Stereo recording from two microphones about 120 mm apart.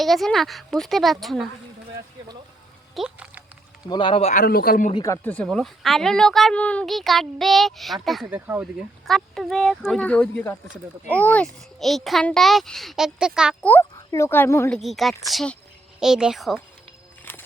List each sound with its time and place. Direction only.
0.0 s a child's voice: centre (ahead or behind)
2.9 s a sound: 5° right (ahead or behind)
3.8 s speech: 40° left (ahead or behind)
4.3 s a man's voice: 85° left
5.2 s speech: 15° left (ahead or behind)
5.5 s a child's voice: centre (ahead or behind)
8.3 s speech: 15° right (ahead or behind)
9.0 s a child's voice: centre (ahead or behind)
13.6 s speech: 15° left (ahead or behind)
14.7 s a child's voice: centre (ahead or behind)